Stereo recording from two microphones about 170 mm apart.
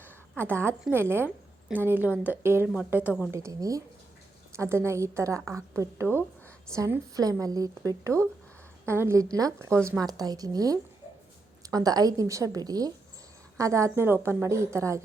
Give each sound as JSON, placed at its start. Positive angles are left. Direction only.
{"t": 0.3, "sound": "a woman's voice", "side_deg": -15}